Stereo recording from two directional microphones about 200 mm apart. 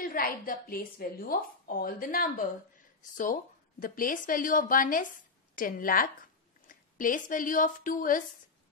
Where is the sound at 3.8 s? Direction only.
45° left (ahead or behind).